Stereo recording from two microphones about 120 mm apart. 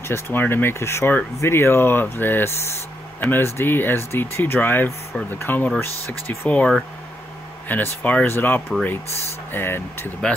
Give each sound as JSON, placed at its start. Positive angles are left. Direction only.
{"t": 0.1, "sound": "speech", "side_deg": 20}
{"t": 10.2, "sound": "speech", "side_deg": 5}